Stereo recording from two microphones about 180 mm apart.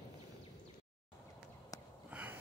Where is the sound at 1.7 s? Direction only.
20° left (ahead or behind).